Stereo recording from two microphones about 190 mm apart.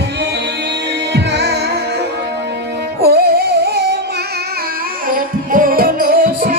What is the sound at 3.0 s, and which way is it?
Music, 55° right (ahead or behind).